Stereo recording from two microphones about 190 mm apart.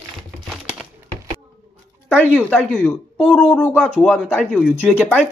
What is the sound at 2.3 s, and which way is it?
Speech, 10° left (ahead or behind).